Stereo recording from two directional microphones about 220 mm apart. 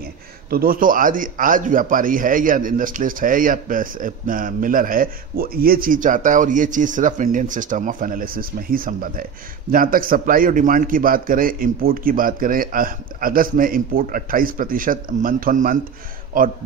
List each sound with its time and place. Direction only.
0.0 s a man's voice: 45° right (ahead or behind)